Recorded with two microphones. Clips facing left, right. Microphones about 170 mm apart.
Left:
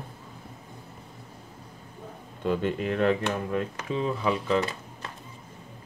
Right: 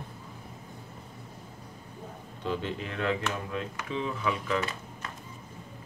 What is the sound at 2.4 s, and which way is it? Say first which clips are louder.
Speech: left 6 dB; 50° left (ahead or behind).